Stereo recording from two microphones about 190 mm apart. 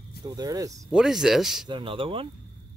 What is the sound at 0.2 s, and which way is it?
Speech, 20° right (ahead or behind).